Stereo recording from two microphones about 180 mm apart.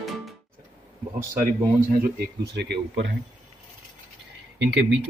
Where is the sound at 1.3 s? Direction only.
50° right (ahead or behind).